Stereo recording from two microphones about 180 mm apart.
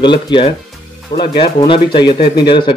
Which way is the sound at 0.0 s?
25° left (ahead or behind).